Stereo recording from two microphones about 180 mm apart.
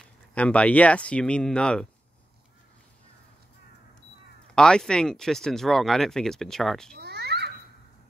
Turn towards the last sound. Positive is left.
turn(degrees=-65)  # may be behind; listen again after turning